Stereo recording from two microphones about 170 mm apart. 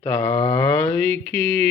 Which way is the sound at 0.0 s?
15° left (ahead or behind).